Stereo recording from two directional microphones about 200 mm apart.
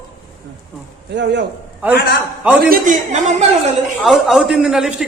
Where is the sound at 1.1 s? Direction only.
60° right (ahead or behind).